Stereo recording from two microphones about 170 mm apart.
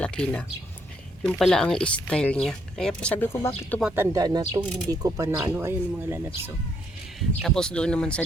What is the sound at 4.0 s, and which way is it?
Speech, 20° right (ahead or behind).